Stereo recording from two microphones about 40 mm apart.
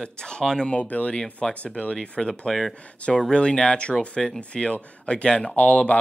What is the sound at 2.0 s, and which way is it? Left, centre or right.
Speech, left.